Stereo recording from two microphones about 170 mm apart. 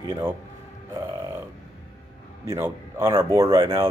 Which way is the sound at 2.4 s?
15° right (ahead or behind).